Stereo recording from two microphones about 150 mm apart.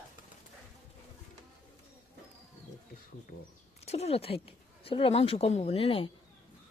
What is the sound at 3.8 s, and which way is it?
Speech, 45° left (ahead or behind).